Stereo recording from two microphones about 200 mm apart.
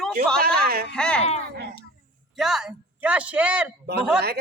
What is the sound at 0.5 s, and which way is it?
Speech, 45° right (ahead or behind).